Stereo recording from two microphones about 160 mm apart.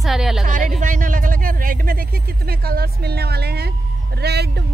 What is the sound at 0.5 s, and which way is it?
Speech, 55° right (ahead or behind).